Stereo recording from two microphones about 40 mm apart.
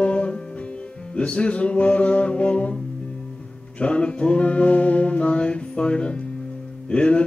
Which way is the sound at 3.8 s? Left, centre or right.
Left.